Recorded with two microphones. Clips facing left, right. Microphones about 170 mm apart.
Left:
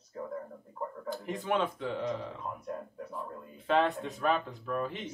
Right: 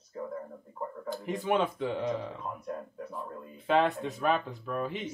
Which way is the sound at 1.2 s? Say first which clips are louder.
Right 3 dB; 10° right (ahead or behind).